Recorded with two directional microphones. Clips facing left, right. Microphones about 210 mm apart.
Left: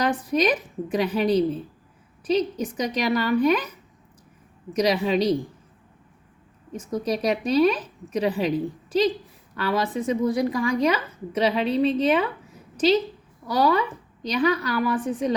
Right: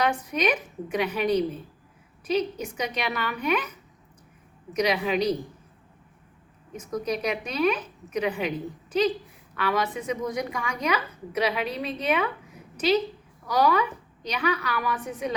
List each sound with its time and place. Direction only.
0.0 s a woman's voice: 35° left (ahead or behind)
4.7 s a woman's voice: 30° left (ahead or behind)
6.7 s a woman's voice: 30° left (ahead or behind)
13.5 s a woman's voice: 30° left (ahead or behind)